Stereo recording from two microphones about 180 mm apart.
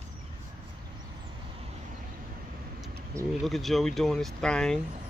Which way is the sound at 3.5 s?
Centre (ahead or behind).